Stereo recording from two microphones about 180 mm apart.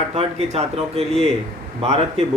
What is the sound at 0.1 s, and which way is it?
Speech, 35° right (ahead or behind).